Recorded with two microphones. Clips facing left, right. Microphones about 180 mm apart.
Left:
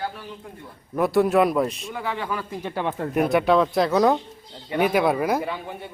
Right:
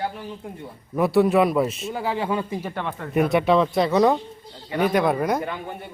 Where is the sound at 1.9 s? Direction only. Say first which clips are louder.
Right 4 dB; 30° right (ahead or behind).